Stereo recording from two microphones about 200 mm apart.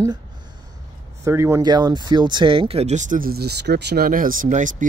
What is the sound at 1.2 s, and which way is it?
Speech, 15° right (ahead or behind).